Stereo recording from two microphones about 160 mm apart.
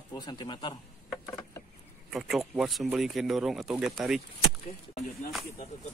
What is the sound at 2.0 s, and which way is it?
Speech, centre (ahead or behind).